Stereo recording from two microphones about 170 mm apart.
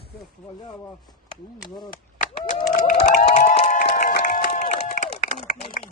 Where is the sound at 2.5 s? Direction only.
45° left (ahead or behind).